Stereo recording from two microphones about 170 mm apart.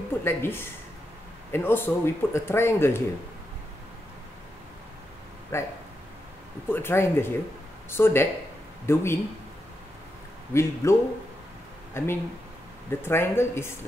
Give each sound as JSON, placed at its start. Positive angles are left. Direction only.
{"t": 0.2, "sound": "speech", "side_deg": 15}
{"t": 5.5, "sound": "speech", "side_deg": 15}
{"t": 6.7, "sound": "speech", "side_deg": 15}
{"t": 10.5, "sound": "speech", "side_deg": 15}